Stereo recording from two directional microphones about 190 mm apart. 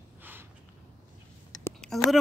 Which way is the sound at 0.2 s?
10° right (ahead or behind).